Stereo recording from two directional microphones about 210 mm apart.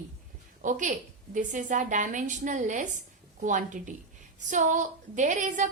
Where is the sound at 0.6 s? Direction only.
35° right (ahead or behind).